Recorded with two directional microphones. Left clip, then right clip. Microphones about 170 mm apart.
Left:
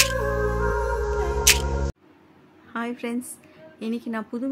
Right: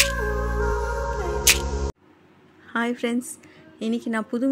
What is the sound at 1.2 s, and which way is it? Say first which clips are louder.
Music: even; centre (ahead or behind).